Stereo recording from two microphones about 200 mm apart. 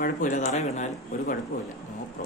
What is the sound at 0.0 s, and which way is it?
Speech, 40° left (ahead or behind).